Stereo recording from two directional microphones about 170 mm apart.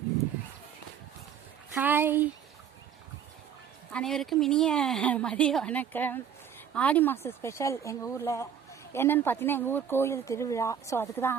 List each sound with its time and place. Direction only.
1.7 s speech: 10° right (ahead or behind)
3.9 s a woman's voice: 5° left (ahead or behind)